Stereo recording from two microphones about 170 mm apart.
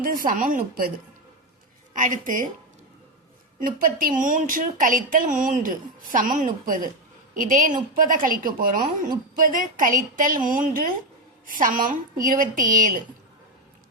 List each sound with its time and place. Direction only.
0.0 s speech: 55° right (ahead or behind)
2.0 s a woman's voice: 50° right (ahead or behind)
3.6 s a woman's voice: 55° right (ahead or behind)